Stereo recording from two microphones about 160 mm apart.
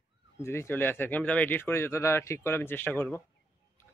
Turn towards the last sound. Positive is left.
turn(degrees=15)  # may be behind; listen again after turning